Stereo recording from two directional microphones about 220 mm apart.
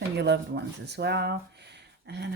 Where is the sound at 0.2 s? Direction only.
50° right (ahead or behind).